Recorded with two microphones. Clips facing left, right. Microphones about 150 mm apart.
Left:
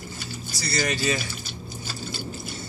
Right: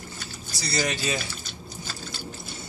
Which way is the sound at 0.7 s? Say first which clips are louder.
Left 2 dB; 20° right (ahead or behind).